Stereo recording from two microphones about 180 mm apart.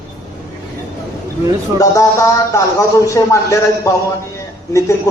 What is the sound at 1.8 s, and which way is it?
A man's voice, 15° left (ahead or behind).